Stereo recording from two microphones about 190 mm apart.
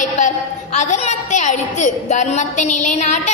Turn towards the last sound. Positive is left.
turn(degrees=40)  # may be behind; listen again after turning